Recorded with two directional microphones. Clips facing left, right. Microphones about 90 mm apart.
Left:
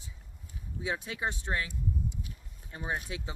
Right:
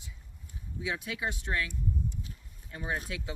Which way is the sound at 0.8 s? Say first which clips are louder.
Left 1 dB; 30° left (ahead or behind).